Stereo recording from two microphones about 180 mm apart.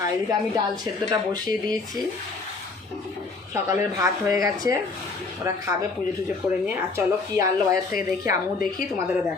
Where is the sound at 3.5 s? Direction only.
15° right (ahead or behind).